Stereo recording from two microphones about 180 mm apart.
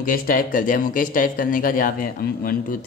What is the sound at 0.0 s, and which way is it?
Speech, 50° left (ahead or behind).